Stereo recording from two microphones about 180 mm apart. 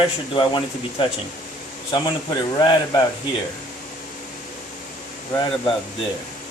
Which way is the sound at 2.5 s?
20° left (ahead or behind).